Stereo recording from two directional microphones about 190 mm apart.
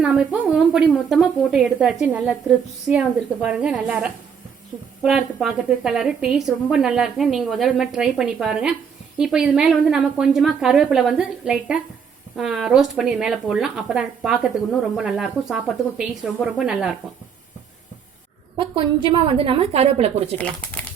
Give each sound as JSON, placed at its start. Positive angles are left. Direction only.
{"t": 0.0, "sound": "a woman's voice", "side_deg": -5}
{"t": 18.5, "sound": "a woman's voice", "side_deg": -25}
{"t": 20.4, "sound": "speech", "side_deg": 5}